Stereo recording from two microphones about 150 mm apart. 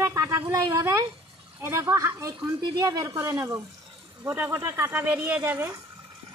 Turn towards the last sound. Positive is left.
turn(degrees=-15)  # may be behind; listen again after turning